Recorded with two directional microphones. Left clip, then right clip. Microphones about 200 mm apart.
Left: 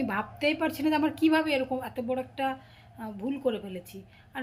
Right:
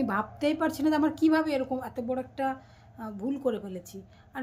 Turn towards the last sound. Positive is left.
turn(degrees=-10)  # may be behind; listen again after turning